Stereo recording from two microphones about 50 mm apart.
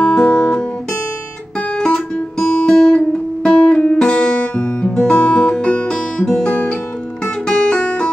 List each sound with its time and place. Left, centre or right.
0.0 s music: centre
1.8 s music: centre
3.4 s guitar: centre
7.4 s guitar: centre